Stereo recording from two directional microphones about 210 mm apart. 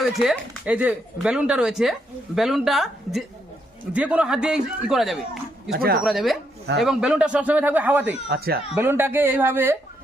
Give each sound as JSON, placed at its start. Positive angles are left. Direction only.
{"t": 0.0, "sound": "speech", "side_deg": 0}
{"t": 5.7, "sound": "speech", "side_deg": -50}
{"t": 6.1, "sound": "speech", "side_deg": 0}
{"t": 8.3, "sound": "speech", "side_deg": -45}
{"t": 8.7, "sound": "speech", "side_deg": -10}